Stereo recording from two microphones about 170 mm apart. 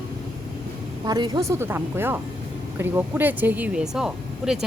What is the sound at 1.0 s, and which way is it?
A woman's voice, 25° right (ahead or behind).